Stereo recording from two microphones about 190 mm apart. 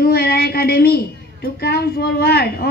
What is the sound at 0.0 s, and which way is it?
A woman's voice, 55° left (ahead or behind).